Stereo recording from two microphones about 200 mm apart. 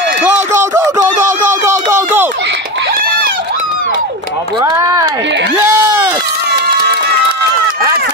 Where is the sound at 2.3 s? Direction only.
60° right (ahead or behind).